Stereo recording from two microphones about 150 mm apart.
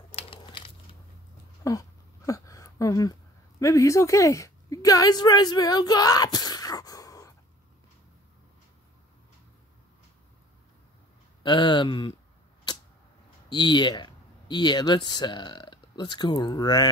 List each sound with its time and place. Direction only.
0.1 s a sound: 40° left (ahead or behind)
0.4 s crushing: 30° left (ahead or behind)
1.6 s speech: 20° left (ahead or behind)
11.4 s speech: 30° left (ahead or behind)
13.5 s speech: 30° left (ahead or behind)